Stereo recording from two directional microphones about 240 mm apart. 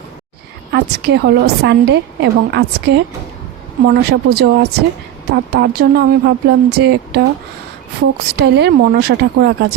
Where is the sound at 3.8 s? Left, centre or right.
Right.